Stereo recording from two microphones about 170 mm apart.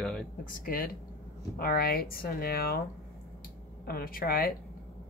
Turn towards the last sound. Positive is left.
turn(degrees=60)  # may be behind; listen again after turning